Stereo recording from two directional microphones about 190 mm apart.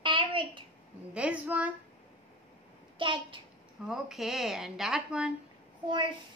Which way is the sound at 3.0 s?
25° right (ahead or behind).